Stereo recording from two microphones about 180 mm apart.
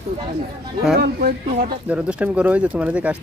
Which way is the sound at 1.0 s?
55° right (ahead or behind).